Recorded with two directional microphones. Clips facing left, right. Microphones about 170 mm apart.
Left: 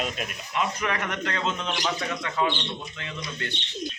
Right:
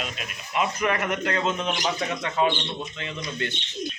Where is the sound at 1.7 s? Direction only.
20° right (ahead or behind).